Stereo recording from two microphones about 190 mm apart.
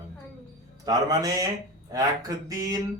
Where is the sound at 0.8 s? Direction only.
20° right (ahead or behind).